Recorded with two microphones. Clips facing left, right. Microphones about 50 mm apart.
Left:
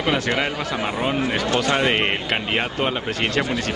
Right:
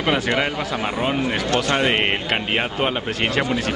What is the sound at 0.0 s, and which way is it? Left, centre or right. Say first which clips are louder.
Speech: right 1 dB; centre.